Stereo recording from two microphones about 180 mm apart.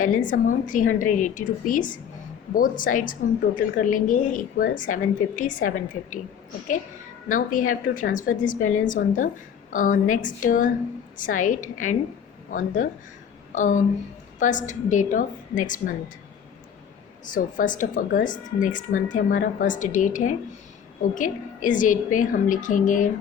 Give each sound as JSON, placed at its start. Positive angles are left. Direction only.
{"t": 0.0, "sound": "a woman's voice", "side_deg": 45}
{"t": 7.3, "sound": "a woman's voice", "side_deg": 45}
{"t": 17.2, "sound": "a woman's voice", "side_deg": 45}